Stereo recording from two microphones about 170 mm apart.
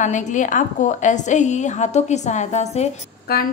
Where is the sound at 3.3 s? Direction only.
65° left (ahead or behind).